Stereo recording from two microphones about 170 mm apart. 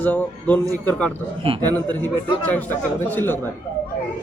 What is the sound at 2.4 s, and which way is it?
Speech, 10° left (ahead or behind).